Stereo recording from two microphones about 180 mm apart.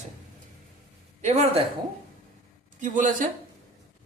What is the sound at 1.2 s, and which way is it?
Speech, 35° right (ahead or behind).